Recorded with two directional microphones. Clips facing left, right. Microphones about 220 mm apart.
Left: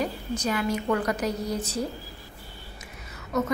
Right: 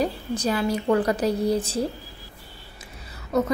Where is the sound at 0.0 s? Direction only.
35° right (ahead or behind).